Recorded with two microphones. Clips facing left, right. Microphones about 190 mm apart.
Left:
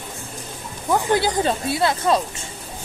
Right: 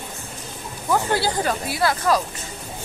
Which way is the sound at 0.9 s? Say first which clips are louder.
Left 2 dB; 15° left (ahead or behind).